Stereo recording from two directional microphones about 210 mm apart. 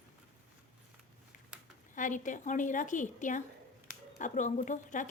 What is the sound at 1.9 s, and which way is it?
A woman's voice, 35° left (ahead or behind).